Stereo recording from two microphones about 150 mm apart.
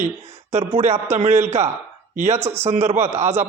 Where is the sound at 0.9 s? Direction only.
15° right (ahead or behind).